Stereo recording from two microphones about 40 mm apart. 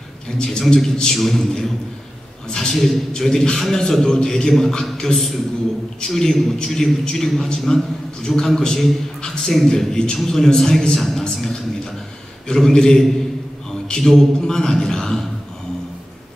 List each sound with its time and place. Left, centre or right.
0.4 s a man's voice: centre